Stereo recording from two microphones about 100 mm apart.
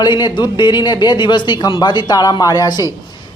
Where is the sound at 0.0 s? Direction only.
45° left (ahead or behind).